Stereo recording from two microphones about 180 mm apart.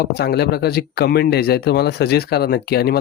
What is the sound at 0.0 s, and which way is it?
Speech, 60° left (ahead or behind).